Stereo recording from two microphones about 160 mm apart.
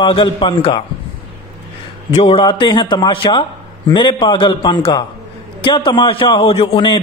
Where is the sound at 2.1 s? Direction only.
35° left (ahead or behind).